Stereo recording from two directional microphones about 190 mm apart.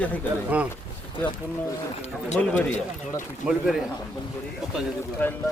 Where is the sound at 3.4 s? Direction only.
5° right (ahead or behind).